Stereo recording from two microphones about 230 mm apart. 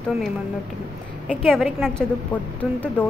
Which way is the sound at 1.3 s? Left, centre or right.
Centre.